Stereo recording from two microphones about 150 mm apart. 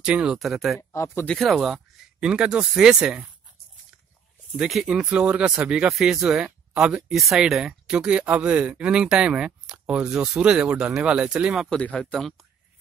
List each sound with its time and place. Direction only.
0.0 s speech: 5° right (ahead or behind)
0.9 s speech: 20° left (ahead or behind)
1.2 s speech: 5° left (ahead or behind)
4.5 s speech: centre (ahead or behind)